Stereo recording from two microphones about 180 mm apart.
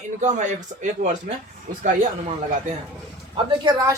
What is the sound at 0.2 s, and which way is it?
Speech, 40° right (ahead or behind).